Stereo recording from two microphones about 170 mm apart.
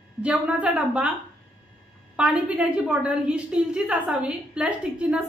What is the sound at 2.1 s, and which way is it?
A woman's voice, 5° right (ahead or behind).